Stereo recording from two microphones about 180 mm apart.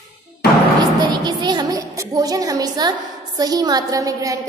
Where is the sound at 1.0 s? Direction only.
25° right (ahead or behind).